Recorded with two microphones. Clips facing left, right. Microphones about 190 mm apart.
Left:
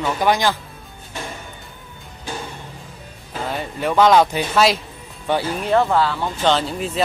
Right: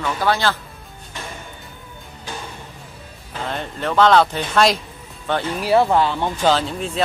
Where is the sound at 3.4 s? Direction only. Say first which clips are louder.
Left 2 dB; 5° left (ahead or behind).